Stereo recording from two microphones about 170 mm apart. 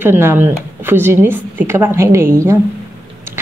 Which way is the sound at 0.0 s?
10° right (ahead or behind).